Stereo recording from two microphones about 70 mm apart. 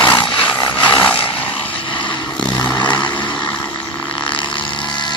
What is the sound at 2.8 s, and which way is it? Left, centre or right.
Vehicle, left.